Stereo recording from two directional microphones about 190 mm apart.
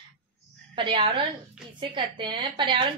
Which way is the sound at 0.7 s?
25° right (ahead or behind).